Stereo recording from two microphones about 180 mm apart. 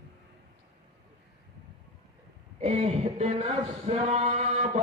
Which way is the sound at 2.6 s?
35° right (ahead or behind).